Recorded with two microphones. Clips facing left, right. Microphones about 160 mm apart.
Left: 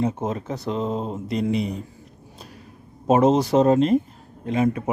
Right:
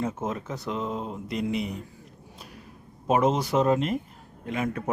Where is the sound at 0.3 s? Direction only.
35° left (ahead or behind).